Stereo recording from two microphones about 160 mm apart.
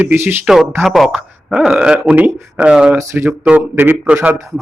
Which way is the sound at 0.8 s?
Centre (ahead or behind).